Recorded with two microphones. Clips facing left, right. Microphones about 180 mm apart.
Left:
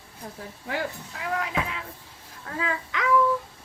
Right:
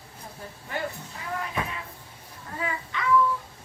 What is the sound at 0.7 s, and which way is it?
Speech, 90° left.